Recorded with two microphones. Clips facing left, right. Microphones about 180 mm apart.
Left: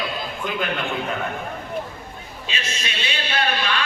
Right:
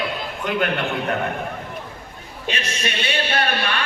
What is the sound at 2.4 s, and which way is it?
Speech, 60° right (ahead or behind).